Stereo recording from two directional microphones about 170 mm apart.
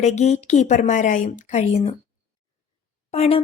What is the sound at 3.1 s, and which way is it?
Speech, 35° left (ahead or behind).